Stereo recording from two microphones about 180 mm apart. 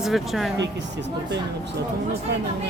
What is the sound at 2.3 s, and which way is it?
Speech, 70° right (ahead or behind).